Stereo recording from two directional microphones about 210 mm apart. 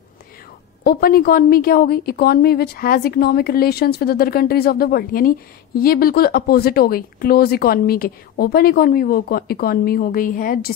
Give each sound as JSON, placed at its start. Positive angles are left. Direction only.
{"t": 0.8, "sound": "speech", "side_deg": 45}